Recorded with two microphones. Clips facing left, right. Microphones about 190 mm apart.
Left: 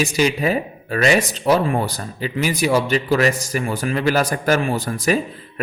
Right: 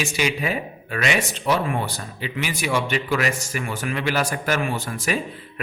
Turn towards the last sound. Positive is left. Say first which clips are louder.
# left 6 dB
turn(degrees=40)  # may be behind; listen again after turning